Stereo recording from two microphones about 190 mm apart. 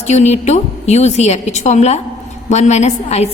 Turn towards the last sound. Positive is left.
turn(degrees=35)  # may be behind; listen again after turning